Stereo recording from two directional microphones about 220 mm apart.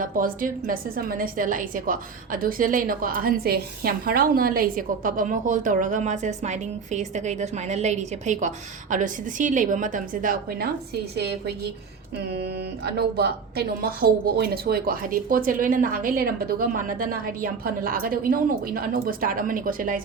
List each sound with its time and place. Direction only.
0.0 s a woman's voice: 40° right (ahead or behind)